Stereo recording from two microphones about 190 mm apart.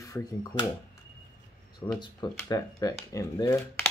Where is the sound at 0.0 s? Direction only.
20° left (ahead or behind).